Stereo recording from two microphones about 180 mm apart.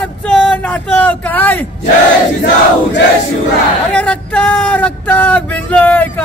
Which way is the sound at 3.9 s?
5° left (ahead or behind).